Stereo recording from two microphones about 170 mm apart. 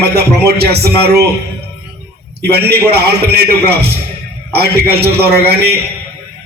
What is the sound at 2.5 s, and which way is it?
A man's voice, 70° right (ahead or behind).